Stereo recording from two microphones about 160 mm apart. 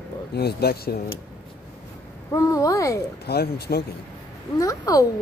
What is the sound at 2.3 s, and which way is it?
Speech, 20° left (ahead or behind).